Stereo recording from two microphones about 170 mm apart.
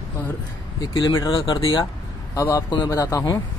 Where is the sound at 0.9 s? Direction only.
30° left (ahead or behind).